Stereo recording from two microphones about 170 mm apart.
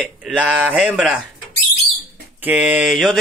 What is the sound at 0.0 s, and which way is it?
Speech, 5° right (ahead or behind).